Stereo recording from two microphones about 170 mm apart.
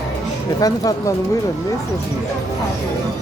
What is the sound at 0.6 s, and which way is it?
Speech, 20° left (ahead or behind).